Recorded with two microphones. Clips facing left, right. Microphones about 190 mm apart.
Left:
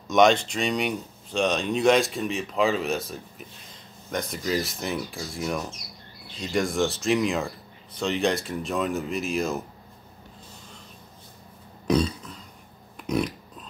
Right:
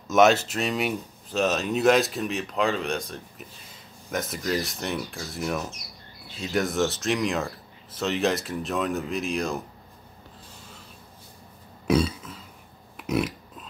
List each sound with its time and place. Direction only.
0.1 s speech: 5° right (ahead or behind)
11.9 s burping: 5° right (ahead or behind)
12.9 s pig: 5° right (ahead or behind)